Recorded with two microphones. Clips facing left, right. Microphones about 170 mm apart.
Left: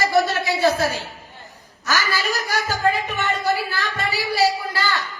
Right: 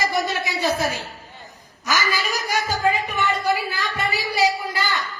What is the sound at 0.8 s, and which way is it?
Speech, 20° right (ahead or behind).